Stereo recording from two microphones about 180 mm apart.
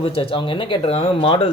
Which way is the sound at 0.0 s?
30° left (ahead or behind).